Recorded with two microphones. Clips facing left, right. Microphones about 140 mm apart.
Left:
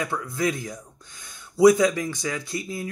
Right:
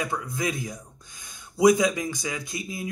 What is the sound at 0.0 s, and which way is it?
Speech, 15° right (ahead or behind).